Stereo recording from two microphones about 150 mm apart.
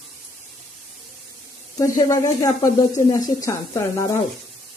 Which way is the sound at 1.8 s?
25° left (ahead or behind).